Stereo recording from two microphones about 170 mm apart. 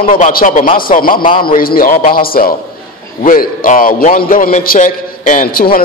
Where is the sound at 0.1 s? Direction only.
60° left (ahead or behind).